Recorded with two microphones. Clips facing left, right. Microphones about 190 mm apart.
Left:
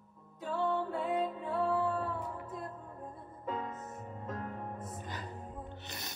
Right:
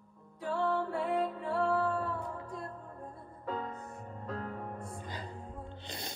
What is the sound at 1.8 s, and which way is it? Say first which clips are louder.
Music: right 1 dB; 20° left (ahead or behind).